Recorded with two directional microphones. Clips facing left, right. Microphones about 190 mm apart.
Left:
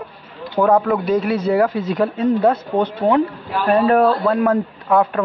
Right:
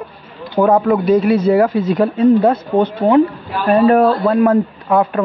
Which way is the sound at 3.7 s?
10° right (ahead or behind).